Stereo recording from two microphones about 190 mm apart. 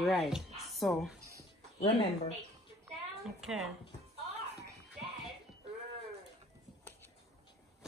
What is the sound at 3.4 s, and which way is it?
Speech, centre (ahead or behind).